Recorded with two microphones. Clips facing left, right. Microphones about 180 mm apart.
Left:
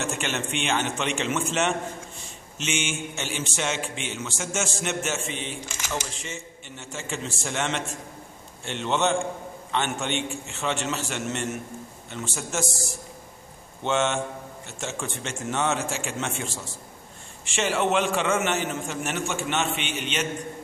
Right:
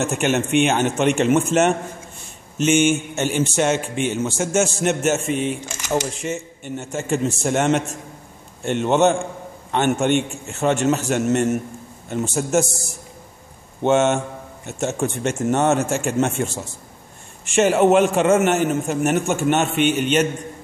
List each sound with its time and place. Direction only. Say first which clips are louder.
0.0 s a man's voice: right 9 dB; 45° right (ahead or behind)
13.8 s a man's voice: right 8 dB; 45° right (ahead or behind)